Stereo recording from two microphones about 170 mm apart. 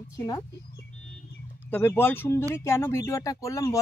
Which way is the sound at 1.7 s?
10° left (ahead or behind).